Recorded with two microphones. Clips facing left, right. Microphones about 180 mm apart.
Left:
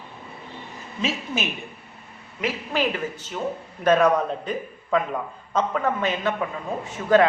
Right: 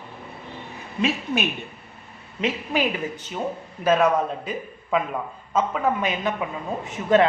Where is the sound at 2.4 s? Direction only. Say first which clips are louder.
Right 1 dB; 15° right (ahead or behind).